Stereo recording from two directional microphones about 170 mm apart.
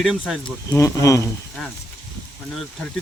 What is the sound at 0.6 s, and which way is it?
Speech, 20° left (ahead or behind).